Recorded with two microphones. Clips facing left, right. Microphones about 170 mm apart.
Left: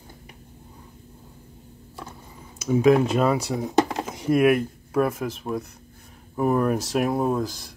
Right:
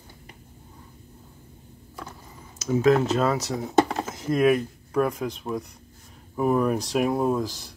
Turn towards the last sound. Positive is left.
turn(degrees=0)  # may be behind; listen again after turning